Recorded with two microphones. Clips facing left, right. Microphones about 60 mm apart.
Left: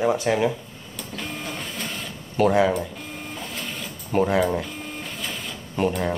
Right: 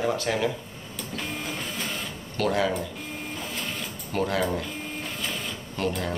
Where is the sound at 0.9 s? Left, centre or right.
Centre.